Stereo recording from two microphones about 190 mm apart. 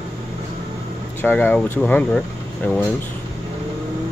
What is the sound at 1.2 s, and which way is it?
Speech, 10° left (ahead or behind).